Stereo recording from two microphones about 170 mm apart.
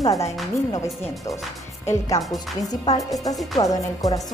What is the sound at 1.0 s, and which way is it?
A woman's voice, 15° left (ahead or behind).